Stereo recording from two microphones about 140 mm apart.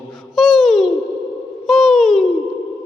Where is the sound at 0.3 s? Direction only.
Centre (ahead or behind).